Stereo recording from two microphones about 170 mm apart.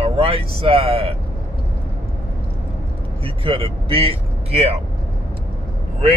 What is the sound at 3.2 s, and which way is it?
Speech, 35° right (ahead or behind).